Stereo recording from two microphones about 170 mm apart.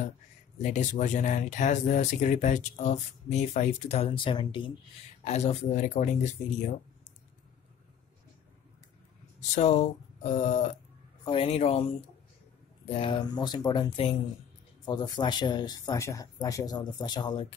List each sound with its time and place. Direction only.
0.6 s speech: 45° left (ahead or behind); by 4.7 s 30° left (ahead or behind)
5.2 s speech: 40° left (ahead or behind)
9.6 s speech: 40° left (ahead or behind)
12.8 s speech: 35° left (ahead or behind)